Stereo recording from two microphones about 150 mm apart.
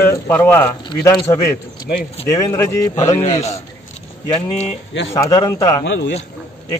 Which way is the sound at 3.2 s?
45° left (ahead or behind).